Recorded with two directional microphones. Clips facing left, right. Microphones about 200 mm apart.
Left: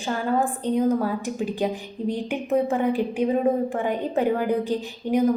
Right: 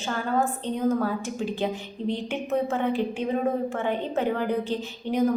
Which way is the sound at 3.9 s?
10° left (ahead or behind).